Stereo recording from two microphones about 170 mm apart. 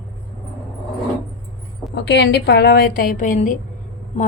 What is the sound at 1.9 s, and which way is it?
A woman's voice, 90° left.